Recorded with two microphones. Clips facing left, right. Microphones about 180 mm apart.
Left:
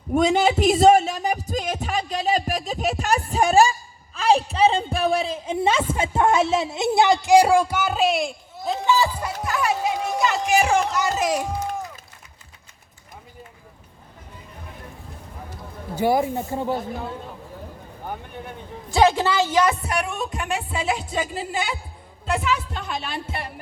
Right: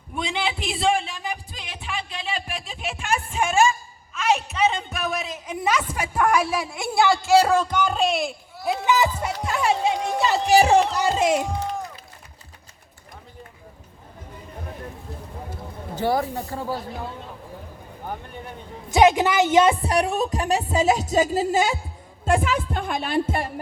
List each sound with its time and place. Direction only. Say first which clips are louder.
0.1 s speech: left 9 dB; 45° left (ahead or behind); by 8.4 s centre (ahead or behind)
8.6 s a sound: even; 15° right (ahead or behind)
9.4 s music: right 1 dB; 25° right (ahead or behind)
10.9 s a child's voice: right 2 dB; 30° right (ahead or behind)
16.0 s speech: left 3 dB; 15° left (ahead or behind)
18.9 s a woman's voice: right 1 dB; 20° right (ahead or behind); by 23.5 s 50° right (ahead or behind)